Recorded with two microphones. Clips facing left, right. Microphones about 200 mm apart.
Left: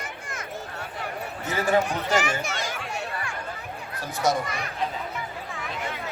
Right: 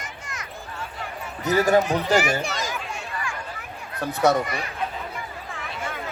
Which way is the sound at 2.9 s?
65° left (ahead or behind).